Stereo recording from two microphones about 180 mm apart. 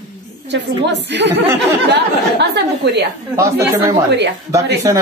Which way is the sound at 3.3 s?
20° right (ahead or behind).